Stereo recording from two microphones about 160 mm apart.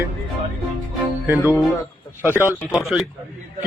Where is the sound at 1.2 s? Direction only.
15° right (ahead or behind).